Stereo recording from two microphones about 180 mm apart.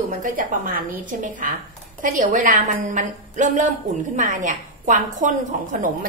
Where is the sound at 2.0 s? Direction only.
45° right (ahead or behind).